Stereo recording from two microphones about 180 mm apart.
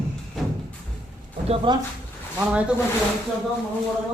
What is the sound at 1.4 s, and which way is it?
Speech, 25° right (ahead or behind).